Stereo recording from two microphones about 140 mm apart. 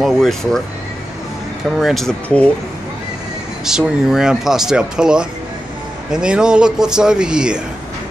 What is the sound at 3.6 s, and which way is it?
Speech, 5° right (ahead or behind).